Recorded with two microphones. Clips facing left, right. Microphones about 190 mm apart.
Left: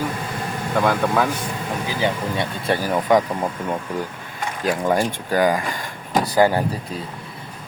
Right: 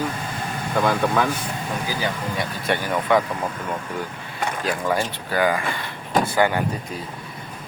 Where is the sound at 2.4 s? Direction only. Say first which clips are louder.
Left 1 dB; 30° left (ahead or behind).